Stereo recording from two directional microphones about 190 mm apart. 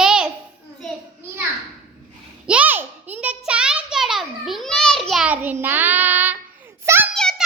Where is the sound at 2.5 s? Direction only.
10° right (ahead or behind).